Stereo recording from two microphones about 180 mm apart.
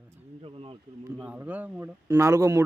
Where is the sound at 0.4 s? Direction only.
30° right (ahead or behind).